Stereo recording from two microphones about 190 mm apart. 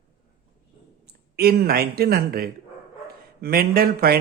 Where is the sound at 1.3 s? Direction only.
55° right (ahead or behind).